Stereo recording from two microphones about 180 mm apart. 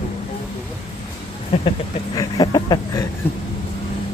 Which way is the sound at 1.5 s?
30° left (ahead or behind).